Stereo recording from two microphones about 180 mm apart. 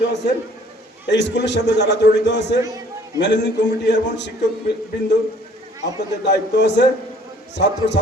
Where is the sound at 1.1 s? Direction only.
75° left (ahead or behind).